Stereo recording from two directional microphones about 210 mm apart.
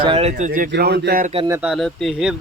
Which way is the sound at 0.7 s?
50° right (ahead or behind).